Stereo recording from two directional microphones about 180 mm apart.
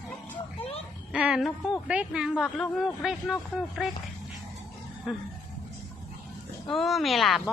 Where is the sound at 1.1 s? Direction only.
5° right (ahead or behind).